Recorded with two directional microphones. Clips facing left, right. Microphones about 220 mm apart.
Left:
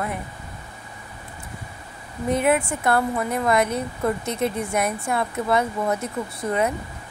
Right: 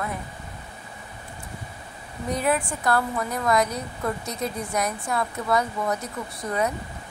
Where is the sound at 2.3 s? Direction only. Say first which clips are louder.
Left 4 dB; 25° left (ahead or behind).